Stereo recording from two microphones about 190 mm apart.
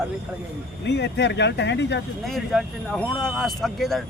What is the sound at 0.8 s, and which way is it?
Speech, 65° left (ahead or behind).